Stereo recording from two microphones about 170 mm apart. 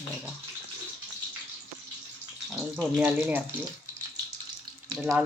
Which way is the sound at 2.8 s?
5° right (ahead or behind).